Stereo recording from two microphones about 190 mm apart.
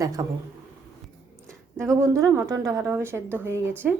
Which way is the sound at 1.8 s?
15° right (ahead or behind).